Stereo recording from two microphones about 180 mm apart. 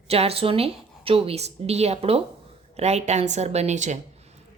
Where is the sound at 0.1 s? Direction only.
35° right (ahead or behind).